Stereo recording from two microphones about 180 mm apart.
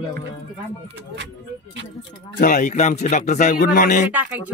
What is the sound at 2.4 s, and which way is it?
Speech, 45° left (ahead or behind).